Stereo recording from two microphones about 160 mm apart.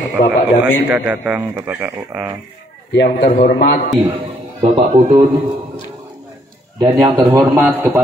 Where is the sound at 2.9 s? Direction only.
90° left.